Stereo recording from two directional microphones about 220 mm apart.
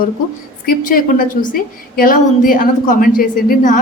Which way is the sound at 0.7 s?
40° left (ahead or behind).